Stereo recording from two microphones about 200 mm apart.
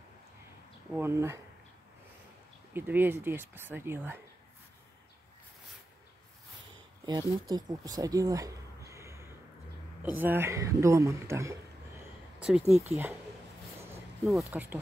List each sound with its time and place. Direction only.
0.9 s speech: 10° right (ahead or behind)
2.7 s speech: 10° right (ahead or behind)
7.1 s speech: 20° right (ahead or behind)
12.0 s a sound: 5° right (ahead or behind)
12.8 s speech: 10° right (ahead or behind)
14.2 s speech: 5° right (ahead or behind)